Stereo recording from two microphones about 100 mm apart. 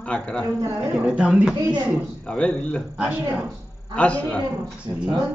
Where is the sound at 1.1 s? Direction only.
10° right (ahead or behind).